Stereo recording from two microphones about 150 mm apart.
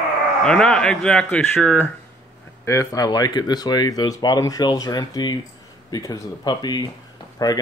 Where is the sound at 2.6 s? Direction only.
20° left (ahead or behind).